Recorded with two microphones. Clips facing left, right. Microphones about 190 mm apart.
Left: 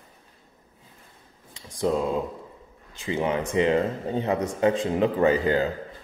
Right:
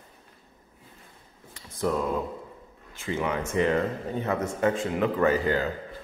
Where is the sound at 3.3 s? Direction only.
20° left (ahead or behind).